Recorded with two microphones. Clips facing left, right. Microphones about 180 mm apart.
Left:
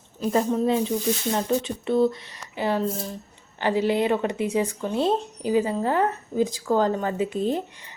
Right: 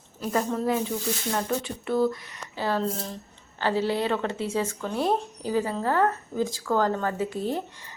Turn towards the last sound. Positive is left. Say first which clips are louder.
# left 4 dB
turn(degrees=20)  # may be behind; listen again after turning